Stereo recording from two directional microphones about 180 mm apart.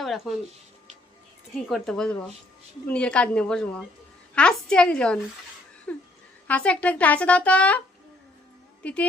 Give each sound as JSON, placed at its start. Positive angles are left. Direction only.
{"t": 0.0, "sound": "speech", "side_deg": 0}
{"t": 1.5, "sound": "a woman's voice", "side_deg": 0}
{"t": 5.9, "sound": "a sound", "side_deg": 10}
{"t": 6.5, "sound": "speech", "side_deg": 5}
{"t": 8.8, "sound": "speech", "side_deg": 5}